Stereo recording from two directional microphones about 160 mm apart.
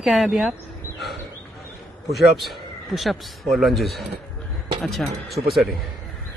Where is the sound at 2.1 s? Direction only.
Centre (ahead or behind).